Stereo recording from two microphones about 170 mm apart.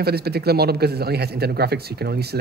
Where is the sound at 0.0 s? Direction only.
70° right (ahead or behind).